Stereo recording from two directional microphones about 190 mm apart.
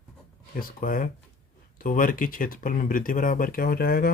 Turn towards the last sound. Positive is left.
turn(degrees=55)  # may be behind; listen again after turning